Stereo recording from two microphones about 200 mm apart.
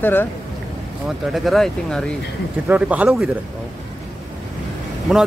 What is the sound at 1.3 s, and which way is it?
Speech, centre (ahead or behind).